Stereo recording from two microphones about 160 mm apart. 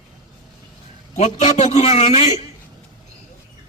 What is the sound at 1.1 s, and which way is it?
A man's voice, 45° left (ahead or behind).